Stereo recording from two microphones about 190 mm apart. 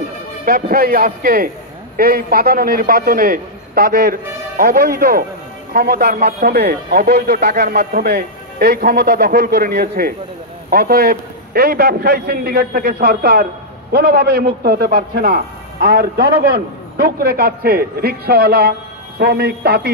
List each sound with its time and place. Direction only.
0.5 s a man's voice: 50° right (ahead or behind)